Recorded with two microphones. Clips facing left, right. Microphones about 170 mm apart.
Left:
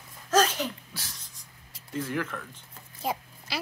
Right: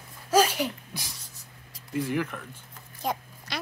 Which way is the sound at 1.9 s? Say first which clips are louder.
Right 3 dB; 15° right (ahead or behind).